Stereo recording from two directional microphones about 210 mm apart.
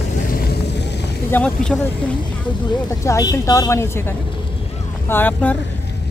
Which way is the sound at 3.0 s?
15° left (ahead or behind).